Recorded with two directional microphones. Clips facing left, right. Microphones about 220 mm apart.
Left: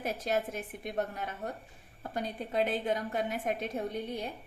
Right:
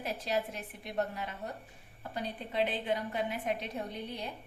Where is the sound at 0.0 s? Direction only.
50° left (ahead or behind).